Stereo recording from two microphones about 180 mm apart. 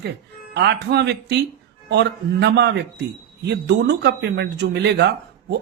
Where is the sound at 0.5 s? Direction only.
70° right (ahead or behind).